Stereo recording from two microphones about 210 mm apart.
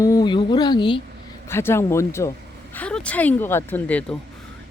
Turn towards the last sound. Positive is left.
turn(degrees=5)  # may be behind; listen again after turning